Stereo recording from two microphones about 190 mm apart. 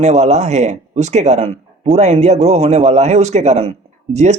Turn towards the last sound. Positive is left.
turn(degrees=-35)  # may be behind; listen again after turning